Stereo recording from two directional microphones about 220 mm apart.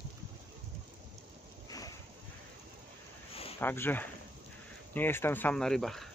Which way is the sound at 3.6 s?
10° left (ahead or behind).